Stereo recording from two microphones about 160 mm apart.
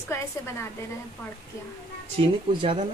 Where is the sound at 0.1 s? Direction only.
15° left (ahead or behind).